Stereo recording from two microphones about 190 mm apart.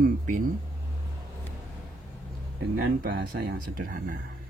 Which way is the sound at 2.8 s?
60° right (ahead or behind).